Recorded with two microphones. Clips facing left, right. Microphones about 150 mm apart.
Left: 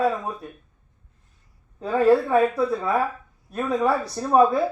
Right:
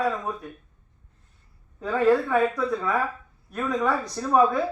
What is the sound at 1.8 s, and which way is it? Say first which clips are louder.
Speech: left 3 dB; 30° left (ahead or behind).